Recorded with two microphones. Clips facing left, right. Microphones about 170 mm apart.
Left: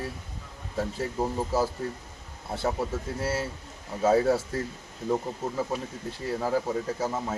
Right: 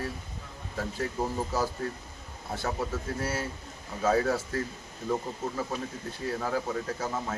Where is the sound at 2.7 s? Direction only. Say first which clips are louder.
Left 1 dB; 25° left (ahead or behind).